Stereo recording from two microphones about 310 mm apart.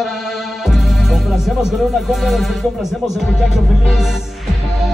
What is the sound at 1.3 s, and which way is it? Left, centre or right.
Music, centre.